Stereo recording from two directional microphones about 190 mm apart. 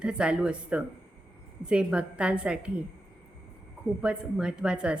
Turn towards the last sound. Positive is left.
turn(degrees=-5)  # may be behind; listen again after turning